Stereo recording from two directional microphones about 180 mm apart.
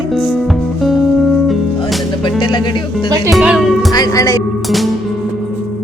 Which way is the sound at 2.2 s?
25° left (ahead or behind).